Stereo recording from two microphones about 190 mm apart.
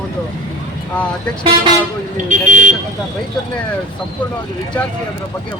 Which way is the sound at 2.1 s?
40° right (ahead or behind).